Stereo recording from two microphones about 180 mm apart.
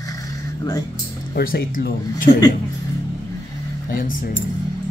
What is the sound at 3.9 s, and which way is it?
Speech, 50° left (ahead or behind).